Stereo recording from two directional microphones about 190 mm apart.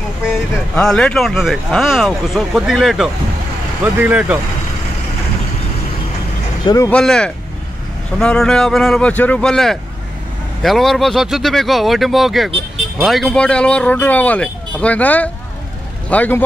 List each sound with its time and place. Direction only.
0.3 s speech: 5° left (ahead or behind)
6.6 s speech: 20° left (ahead or behind)
6.9 s speech: 5° left (ahead or behind)